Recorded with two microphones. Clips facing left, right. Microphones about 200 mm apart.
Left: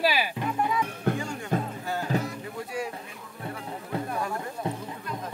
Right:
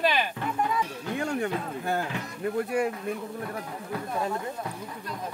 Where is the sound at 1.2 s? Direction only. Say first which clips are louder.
Right 7 dB; 60° right (ahead or behind).